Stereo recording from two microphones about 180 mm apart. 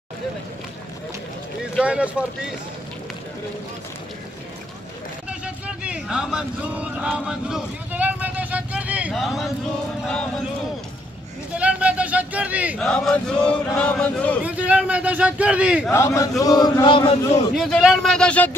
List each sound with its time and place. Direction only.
1.8 s a man's voice: 5° right (ahead or behind)
5.4 s a sound: 5° right (ahead or behind)
11.5 s a sound: 5° right (ahead or behind)
12.7 s a man's voice: 5° left (ahead or behind)
13.7 s chant: 5° left (ahead or behind)
14.4 s a man's voice: 10° right (ahead or behind)
15.9 s speech: 15° left (ahead or behind)
17.6 s a man's voice: centre (ahead or behind)